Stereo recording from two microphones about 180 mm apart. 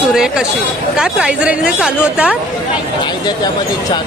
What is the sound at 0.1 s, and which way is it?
A woman's voice, 5° right (ahead or behind).